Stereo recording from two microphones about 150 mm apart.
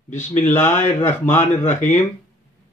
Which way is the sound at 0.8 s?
15° left (ahead or behind).